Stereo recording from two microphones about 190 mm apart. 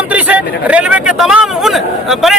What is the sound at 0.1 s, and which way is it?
A man's voice, 10° right (ahead or behind).